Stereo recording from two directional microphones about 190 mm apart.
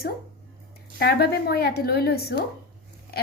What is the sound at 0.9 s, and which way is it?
A woman's voice, 55° left (ahead or behind).